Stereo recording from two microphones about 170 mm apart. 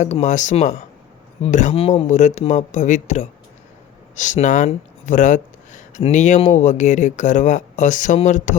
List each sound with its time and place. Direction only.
0.0 s speech: 45° left (ahead or behind)